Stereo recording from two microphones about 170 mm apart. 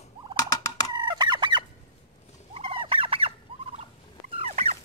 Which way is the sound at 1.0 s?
25° right (ahead or behind).